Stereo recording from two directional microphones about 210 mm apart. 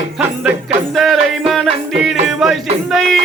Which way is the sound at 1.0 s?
Centre (ahead or behind).